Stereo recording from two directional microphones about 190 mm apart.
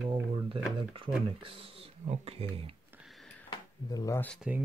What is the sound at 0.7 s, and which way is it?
Speech, 25° right (ahead or behind).